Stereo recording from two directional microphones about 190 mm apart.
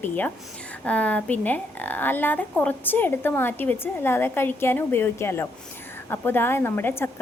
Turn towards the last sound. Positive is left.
turn(degrees=10)  # may be behind; listen again after turning